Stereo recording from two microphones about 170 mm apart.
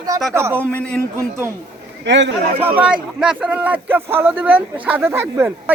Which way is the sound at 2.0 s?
90° right.